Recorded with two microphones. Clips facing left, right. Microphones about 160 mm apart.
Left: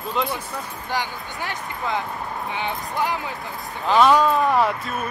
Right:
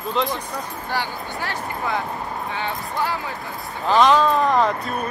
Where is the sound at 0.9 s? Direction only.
15° left (ahead or behind).